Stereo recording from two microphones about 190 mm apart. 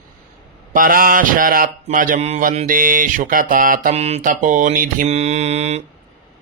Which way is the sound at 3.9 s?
35° right (ahead or behind).